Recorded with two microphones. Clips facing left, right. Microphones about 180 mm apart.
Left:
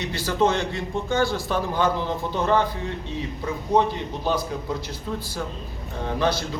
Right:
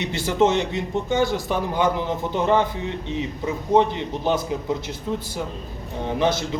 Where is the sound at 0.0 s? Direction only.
20° right (ahead or behind).